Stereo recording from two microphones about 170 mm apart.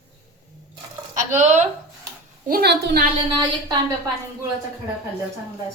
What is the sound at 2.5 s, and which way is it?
Speech, 70° right (ahead or behind).